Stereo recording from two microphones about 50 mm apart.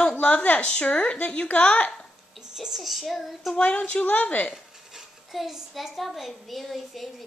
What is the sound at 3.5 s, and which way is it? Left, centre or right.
Speech, left.